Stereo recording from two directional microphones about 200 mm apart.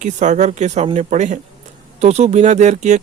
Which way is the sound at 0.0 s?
35° right (ahead or behind).